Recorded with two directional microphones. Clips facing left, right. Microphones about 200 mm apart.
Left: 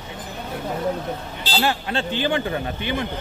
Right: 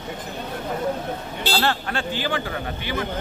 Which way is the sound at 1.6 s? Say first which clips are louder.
Left 4 dB; 15° left (ahead or behind).